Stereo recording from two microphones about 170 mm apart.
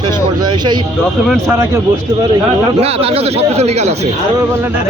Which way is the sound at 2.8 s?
35° right (ahead or behind).